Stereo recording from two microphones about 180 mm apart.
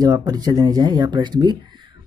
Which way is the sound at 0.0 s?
20° right (ahead or behind).